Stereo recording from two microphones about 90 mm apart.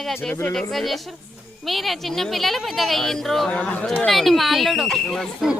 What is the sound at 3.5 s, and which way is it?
Speech, 15° left (ahead or behind).